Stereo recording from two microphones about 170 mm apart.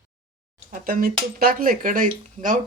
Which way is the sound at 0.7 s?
55° right (ahead or behind).